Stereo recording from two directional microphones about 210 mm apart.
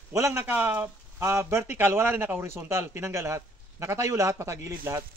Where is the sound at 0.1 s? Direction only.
15° right (ahead or behind).